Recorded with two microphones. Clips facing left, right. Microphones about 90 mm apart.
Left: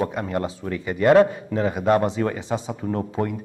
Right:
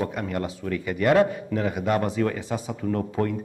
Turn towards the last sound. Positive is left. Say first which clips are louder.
# even
turn(degrees=20)  # may be behind; listen again after turning